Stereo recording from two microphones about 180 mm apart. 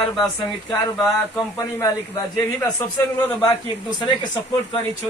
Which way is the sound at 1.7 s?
20° left (ahead or behind).